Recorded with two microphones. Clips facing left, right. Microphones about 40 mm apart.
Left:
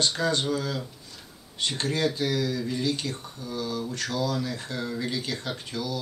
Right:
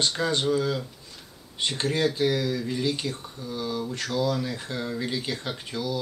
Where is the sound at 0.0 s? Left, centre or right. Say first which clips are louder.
Right 1 dB; centre.